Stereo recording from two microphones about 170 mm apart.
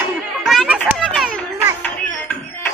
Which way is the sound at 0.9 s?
Centre (ahead or behind).